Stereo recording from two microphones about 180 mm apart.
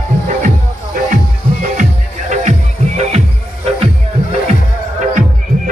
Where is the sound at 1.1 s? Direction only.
45° right (ahead or behind).